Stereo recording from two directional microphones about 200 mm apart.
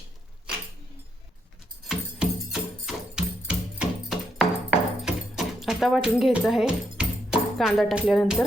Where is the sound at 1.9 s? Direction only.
Centre (ahead or behind).